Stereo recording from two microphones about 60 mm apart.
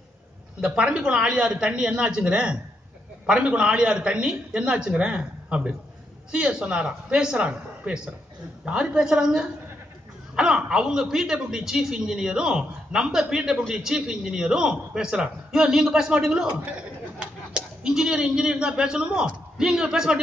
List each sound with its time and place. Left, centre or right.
0.6 s a man's voice: centre